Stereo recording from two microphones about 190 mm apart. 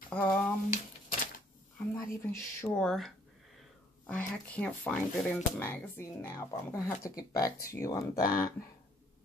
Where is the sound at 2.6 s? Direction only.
5° left (ahead or behind).